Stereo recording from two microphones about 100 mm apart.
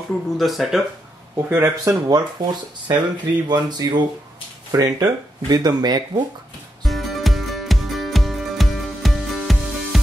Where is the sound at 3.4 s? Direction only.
45° right (ahead or behind).